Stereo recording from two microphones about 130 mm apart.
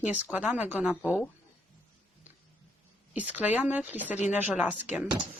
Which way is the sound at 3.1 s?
10° right (ahead or behind).